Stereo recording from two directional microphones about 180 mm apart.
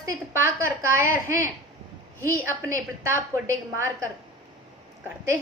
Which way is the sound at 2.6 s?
15° right (ahead or behind).